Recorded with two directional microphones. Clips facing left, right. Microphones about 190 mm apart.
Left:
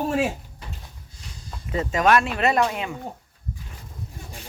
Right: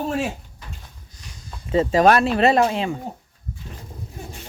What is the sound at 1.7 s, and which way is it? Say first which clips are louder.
Speech: right 4 dB; 30° right (ahead or behind).